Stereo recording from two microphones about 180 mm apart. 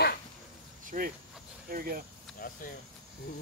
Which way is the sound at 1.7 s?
55° right (ahead or behind).